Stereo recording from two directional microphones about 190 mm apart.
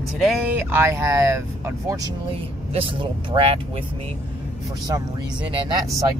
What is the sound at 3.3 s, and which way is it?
Speech, 30° right (ahead or behind).